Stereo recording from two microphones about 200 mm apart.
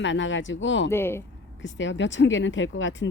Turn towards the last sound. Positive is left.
turn(degrees=70)  # may be behind; listen again after turning